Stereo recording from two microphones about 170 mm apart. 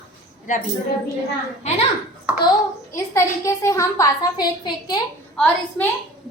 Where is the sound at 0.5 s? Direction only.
50° left (ahead or behind).